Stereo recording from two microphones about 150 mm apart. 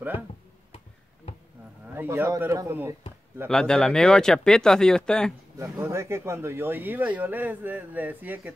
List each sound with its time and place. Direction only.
2.0 s speech: 15° right (ahead or behind)
3.4 s speech: 5° left (ahead or behind)
5.6 s speech: 20° right (ahead or behind)